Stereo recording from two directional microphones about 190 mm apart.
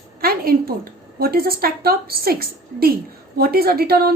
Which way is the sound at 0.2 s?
50° right (ahead or behind).